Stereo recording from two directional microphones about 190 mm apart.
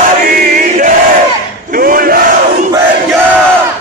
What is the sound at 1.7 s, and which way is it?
Battle cry, 50° right (ahead or behind).